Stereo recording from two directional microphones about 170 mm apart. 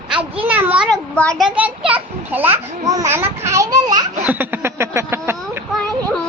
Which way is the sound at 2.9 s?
15° right (ahead or behind).